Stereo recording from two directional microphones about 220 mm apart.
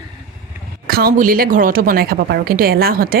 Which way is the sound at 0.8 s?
45° right (ahead or behind).